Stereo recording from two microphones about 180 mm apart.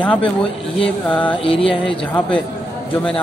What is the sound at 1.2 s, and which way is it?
Music, 30° left (ahead or behind).